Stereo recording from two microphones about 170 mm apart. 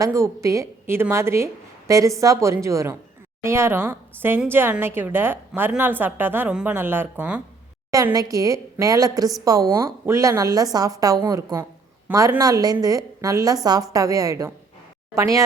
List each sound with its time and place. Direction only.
0.0 s a woman's voice: 20° right (ahead or behind)
7.9 s a woman's voice: 20° right (ahead or behind)